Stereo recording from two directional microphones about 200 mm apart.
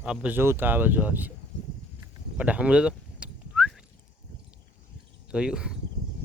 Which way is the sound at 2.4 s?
5° right (ahead or behind).